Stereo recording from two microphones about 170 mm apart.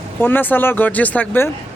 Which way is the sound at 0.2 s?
10° left (ahead or behind).